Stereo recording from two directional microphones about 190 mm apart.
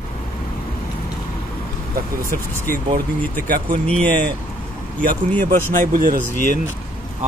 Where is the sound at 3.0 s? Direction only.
50° right (ahead or behind).